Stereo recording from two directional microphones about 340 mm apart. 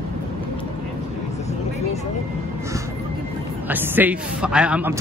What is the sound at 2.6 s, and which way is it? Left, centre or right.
A man's voice, centre.